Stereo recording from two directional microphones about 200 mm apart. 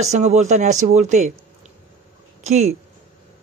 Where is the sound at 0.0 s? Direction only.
35° right (ahead or behind).